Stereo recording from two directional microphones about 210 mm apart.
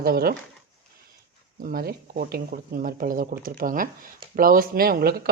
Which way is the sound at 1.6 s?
45° right (ahead or behind).